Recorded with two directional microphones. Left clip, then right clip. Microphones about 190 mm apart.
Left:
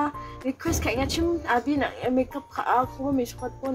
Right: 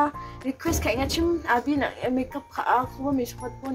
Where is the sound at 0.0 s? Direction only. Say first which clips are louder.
Right 3 dB; 5° right (ahead or behind).